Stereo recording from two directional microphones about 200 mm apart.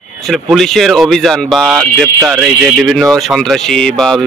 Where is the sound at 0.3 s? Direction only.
Centre (ahead or behind).